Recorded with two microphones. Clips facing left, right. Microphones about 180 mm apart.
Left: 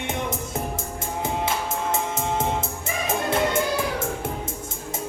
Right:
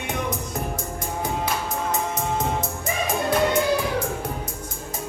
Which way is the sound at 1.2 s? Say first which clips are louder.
Left 1 dB; 25° left (ahead or behind).